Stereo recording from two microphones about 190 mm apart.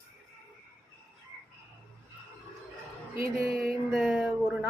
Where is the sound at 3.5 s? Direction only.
Centre (ahead or behind).